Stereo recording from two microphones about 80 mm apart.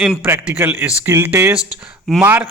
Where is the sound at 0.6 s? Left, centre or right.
Right.